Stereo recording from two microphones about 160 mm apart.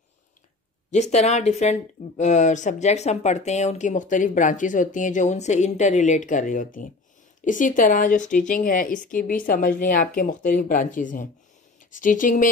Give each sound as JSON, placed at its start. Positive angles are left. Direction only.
{"t": 0.9, "sound": "a woman's voice", "side_deg": 45}